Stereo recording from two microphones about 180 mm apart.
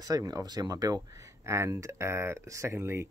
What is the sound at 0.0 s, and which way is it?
Speech, 20° right (ahead or behind).